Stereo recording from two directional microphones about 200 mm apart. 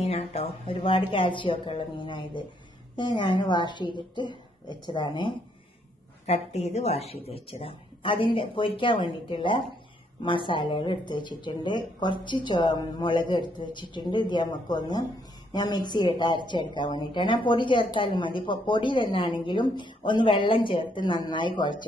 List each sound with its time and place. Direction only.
0.0 s a woman's voice: 30° left (ahead or behind)
6.2 s a woman's voice: 35° left (ahead or behind)